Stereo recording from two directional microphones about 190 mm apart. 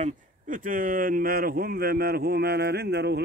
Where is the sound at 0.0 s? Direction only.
45° right (ahead or behind).